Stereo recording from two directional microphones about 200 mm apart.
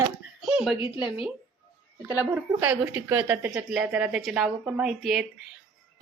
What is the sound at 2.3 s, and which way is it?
A woman's voice, 10° right (ahead or behind).